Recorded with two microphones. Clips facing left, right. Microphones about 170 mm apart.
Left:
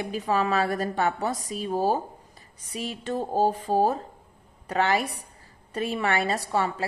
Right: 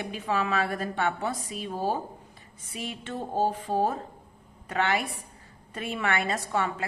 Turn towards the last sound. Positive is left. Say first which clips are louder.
# left 2 dB
turn(degrees=35)  # may be behind; listen again after turning